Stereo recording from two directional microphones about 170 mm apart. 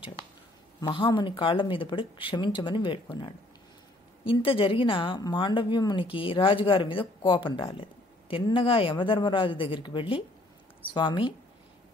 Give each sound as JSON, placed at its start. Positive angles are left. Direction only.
{"t": 0.7, "sound": "speech", "side_deg": 30}